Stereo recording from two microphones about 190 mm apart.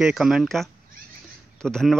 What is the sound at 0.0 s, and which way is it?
A man's voice, centre (ahead or behind).